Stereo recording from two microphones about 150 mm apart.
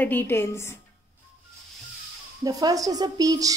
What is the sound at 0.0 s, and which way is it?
Speech, 15° left (ahead or behind).